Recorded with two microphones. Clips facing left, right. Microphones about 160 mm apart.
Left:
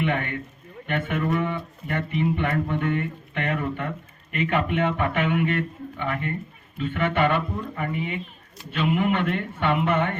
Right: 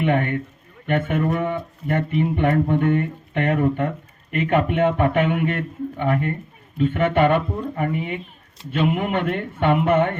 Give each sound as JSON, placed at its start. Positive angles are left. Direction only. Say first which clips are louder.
{"t": 0.0, "sound": "speech", "louder": "right 5 dB", "side_deg": -45}